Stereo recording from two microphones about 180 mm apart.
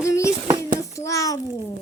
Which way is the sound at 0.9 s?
15° left (ahead or behind).